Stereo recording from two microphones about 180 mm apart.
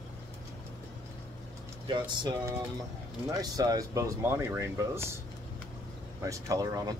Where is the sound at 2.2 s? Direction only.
20° right (ahead or behind).